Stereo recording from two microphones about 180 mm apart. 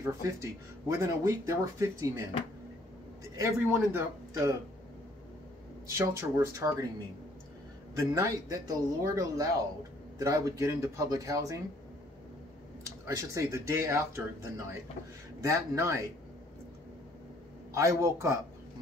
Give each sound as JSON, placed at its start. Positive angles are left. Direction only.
{"t": 0.2, "sound": "speech", "side_deg": -15}
{"t": 3.3, "sound": "speech", "side_deg": -15}
{"t": 5.9, "sound": "speech", "side_deg": -15}
{"t": 8.1, "sound": "speech", "side_deg": -20}
{"t": 13.0, "sound": "speech", "side_deg": -15}
{"t": 17.7, "sound": "speech", "side_deg": -15}